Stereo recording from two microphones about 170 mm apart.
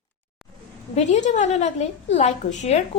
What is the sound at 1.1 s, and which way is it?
A woman's voice, 45° left (ahead or behind).